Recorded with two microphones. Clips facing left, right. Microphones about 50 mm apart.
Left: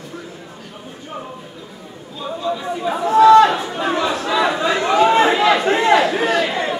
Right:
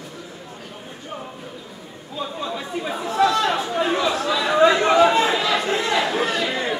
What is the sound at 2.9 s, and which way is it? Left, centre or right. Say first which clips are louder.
Chatter: left 10 dB; left.